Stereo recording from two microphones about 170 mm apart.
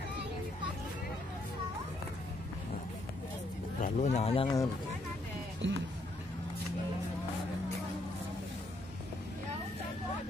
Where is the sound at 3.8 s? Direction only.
40° left (ahead or behind).